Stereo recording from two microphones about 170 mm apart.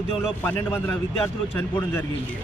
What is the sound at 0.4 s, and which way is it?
Speech, 10° left (ahead or behind).